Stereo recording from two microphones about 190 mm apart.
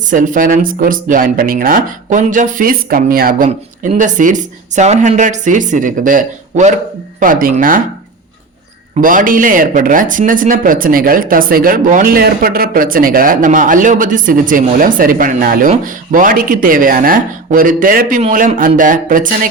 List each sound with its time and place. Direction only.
0.1 s speech: 45° right (ahead or behind)
9.0 s speech: 45° right (ahead or behind)